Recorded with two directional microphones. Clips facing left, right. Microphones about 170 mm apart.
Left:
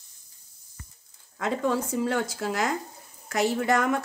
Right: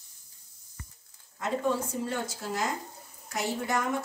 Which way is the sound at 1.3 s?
90° left.